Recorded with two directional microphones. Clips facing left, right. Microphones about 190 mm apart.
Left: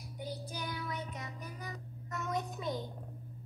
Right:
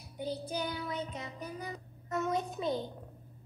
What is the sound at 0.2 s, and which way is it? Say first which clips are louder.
Child singing: right 6 dB; 25° right (ahead or behind).